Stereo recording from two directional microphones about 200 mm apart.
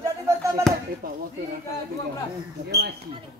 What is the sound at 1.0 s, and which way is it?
Speech, 45° right (ahead or behind).